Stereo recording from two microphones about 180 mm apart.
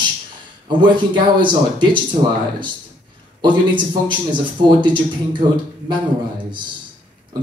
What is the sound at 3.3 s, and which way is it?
Speech, 25° right (ahead or behind).